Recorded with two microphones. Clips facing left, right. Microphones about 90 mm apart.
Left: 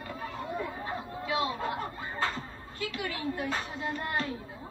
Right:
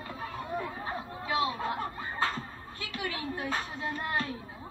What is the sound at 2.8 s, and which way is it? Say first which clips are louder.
Speech: left 2 dB; 20° right (ahead or behind).